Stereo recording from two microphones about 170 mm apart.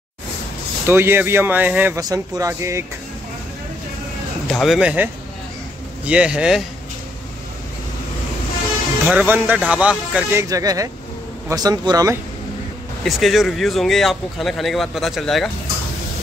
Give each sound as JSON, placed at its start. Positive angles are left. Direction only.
{"t": 0.8, "sound": "speech", "side_deg": -15}
{"t": 2.0, "sound": "speech", "side_deg": -20}
{"t": 4.5, "sound": "speech", "side_deg": 0}
{"t": 9.0, "sound": "speech", "side_deg": -10}
{"t": 10.5, "sound": "speech", "side_deg": -20}
{"t": 13.0, "sound": "speech", "side_deg": 0}